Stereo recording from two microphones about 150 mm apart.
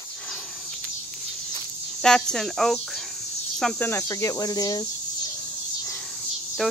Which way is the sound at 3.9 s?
20° left (ahead or behind).